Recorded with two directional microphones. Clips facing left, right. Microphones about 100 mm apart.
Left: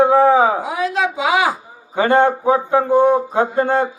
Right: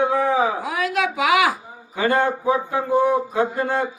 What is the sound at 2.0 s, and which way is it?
A man's voice, 30° left (ahead or behind).